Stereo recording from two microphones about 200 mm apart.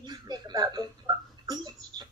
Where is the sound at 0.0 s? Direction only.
20° right (ahead or behind).